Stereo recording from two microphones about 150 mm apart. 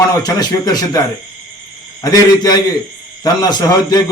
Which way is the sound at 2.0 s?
25° left (ahead or behind).